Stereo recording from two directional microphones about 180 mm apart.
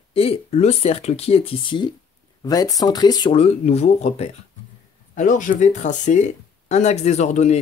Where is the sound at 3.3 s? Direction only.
35° left (ahead or behind).